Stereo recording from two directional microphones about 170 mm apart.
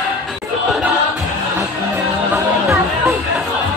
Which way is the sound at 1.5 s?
15° right (ahead or behind).